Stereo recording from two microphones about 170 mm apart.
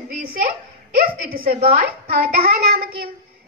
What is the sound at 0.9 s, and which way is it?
A child's voice, 60° right (ahead or behind).